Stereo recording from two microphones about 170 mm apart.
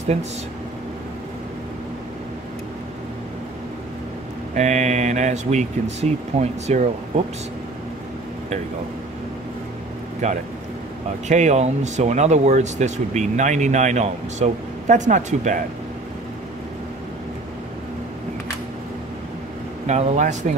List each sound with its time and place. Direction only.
4.6 s speech: 45° right (ahead or behind)
10.2 s speech: 45° right (ahead or behind)
19.9 s speech: 45° right (ahead or behind)